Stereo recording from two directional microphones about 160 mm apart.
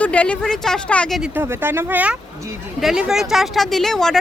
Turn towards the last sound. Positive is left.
turn(degrees=5)  # may be behind; listen again after turning